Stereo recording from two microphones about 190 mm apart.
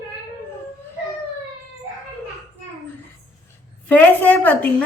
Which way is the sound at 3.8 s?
10° left (ahead or behind).